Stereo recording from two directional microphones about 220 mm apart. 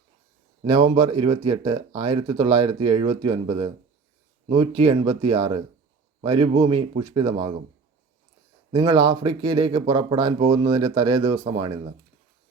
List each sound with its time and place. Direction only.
0.6 s speech: 25° right (ahead or behind)
8.7 s speech: 20° right (ahead or behind)